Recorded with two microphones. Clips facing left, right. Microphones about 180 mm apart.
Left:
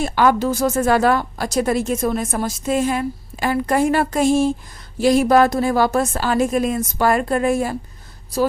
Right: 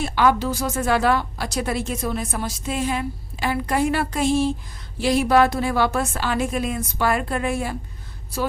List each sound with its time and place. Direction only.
0.0 s a woman's voice: 45° left (ahead or behind)